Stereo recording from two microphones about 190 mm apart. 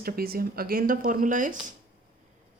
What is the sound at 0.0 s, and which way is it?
Speech, 50° right (ahead or behind).